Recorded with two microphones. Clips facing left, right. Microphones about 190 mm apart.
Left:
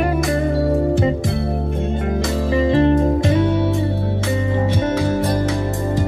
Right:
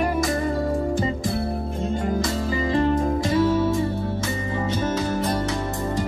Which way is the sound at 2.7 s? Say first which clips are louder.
Left 4 dB; 60° left (ahead or behind).